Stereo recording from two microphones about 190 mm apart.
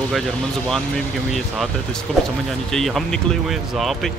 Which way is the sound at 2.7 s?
Centre (ahead or behind).